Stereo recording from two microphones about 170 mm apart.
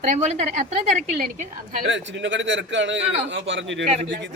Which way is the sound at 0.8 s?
45° right (ahead or behind).